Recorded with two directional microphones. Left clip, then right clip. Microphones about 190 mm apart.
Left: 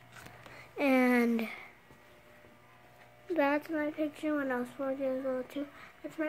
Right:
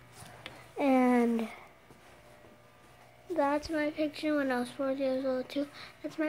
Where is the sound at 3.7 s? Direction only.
10° right (ahead or behind).